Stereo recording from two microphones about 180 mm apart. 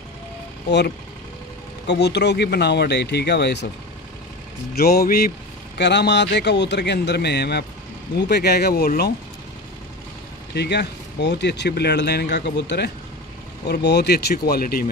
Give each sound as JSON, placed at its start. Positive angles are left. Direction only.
{"t": 0.7, "sound": "speech", "side_deg": 70}
{"t": 4.7, "sound": "speech", "side_deg": 60}
{"t": 5.8, "sound": "speech", "side_deg": 70}
{"t": 10.5, "sound": "speech", "side_deg": 70}